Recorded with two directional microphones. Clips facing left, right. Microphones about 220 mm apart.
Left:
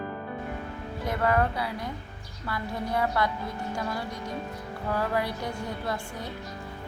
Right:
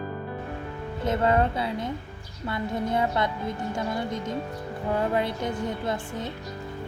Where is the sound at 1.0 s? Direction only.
25° right (ahead or behind).